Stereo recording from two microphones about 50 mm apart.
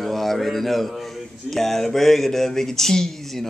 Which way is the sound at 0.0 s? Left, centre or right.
Centre.